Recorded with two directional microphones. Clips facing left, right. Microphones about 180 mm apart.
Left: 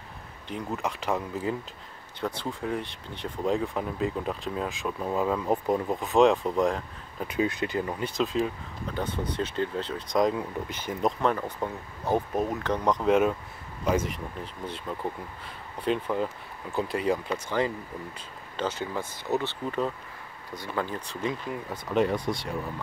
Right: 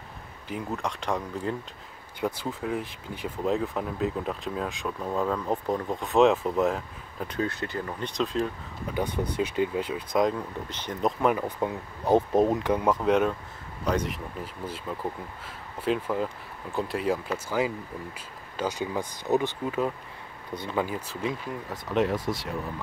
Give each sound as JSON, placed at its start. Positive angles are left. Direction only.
{"t": 0.5, "sound": "speech", "side_deg": 0}
{"t": 2.1, "sound": "speech", "side_deg": -10}
{"t": 7.2, "sound": "speech", "side_deg": 15}
{"t": 8.1, "sound": "speech", "side_deg": 0}
{"t": 8.9, "sound": "speech", "side_deg": -10}
{"t": 12.3, "sound": "speech", "side_deg": -30}
{"t": 12.6, "sound": "speech", "side_deg": -5}
{"t": 20.5, "sound": "speech", "side_deg": -20}
{"t": 20.8, "sound": "speech", "side_deg": -5}